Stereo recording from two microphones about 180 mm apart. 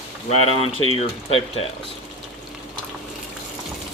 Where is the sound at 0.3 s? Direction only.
35° left (ahead or behind).